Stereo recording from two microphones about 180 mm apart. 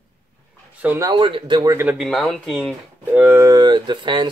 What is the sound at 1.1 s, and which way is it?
Speech, 25° right (ahead or behind).